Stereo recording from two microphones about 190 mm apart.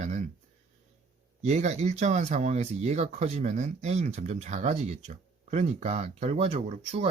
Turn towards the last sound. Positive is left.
turn(degrees=-35)  # may be behind; listen again after turning